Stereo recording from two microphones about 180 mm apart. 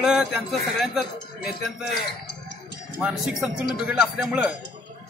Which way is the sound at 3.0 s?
5° right (ahead or behind).